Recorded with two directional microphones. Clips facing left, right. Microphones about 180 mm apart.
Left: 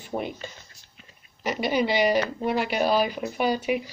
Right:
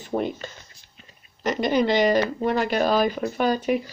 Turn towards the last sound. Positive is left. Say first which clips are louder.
# right 2 dB
turn(degrees=10)  # may be behind; listen again after turning